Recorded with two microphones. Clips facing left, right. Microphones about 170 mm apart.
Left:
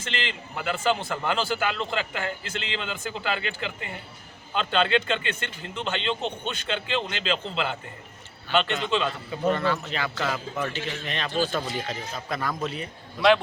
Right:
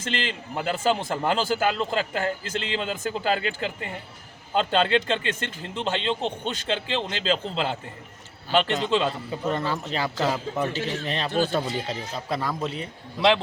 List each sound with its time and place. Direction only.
0.0 s a man's voice: 40° right (ahead or behind)